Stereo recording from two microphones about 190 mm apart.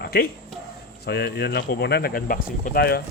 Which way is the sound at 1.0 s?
55° left (ahead or behind).